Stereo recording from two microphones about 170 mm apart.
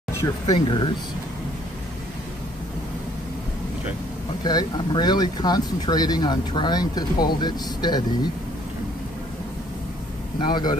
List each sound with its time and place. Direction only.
0.2 s speech: 25° left (ahead or behind)
4.5 s speech: 25° left (ahead or behind)
10.4 s speech: 25° left (ahead or behind)